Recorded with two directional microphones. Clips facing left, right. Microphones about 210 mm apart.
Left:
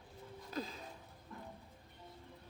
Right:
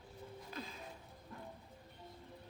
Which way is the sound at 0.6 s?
40° left (ahead or behind).